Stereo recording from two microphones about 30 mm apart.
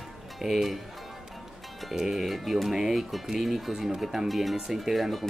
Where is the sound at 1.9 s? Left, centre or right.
Centre.